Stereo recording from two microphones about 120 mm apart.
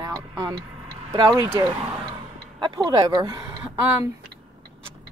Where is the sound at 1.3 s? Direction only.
25° right (ahead or behind).